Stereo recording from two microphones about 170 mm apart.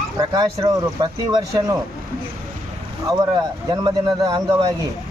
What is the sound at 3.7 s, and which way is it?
Speech, 25° right (ahead or behind).